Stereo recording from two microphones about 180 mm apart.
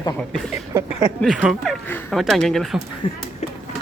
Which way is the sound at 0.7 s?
20° right (ahead or behind).